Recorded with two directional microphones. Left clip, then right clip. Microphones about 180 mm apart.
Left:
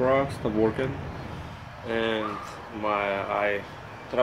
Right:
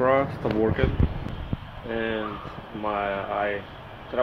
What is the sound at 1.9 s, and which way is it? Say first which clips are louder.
Speech: left 1 dB; 15° left (ahead or behind).